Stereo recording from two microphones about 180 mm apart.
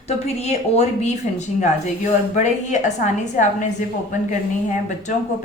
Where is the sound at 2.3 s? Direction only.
40° left (ahead or behind).